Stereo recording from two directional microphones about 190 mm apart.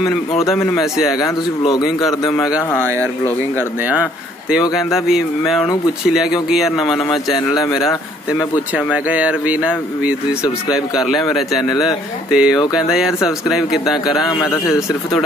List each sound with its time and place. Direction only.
1.6 s a man's voice: 20° left (ahead or behind)
4.5 s speech: 5° right (ahead or behind)
7.5 s speech: 15° left (ahead or behind)
8.7 s speech: 5° right (ahead or behind)
12.3 s speech: 5° right (ahead or behind)
14.3 s speech: 15° left (ahead or behind)